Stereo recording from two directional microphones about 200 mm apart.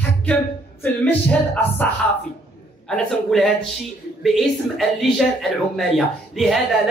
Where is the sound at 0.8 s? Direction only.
10° left (ahead or behind).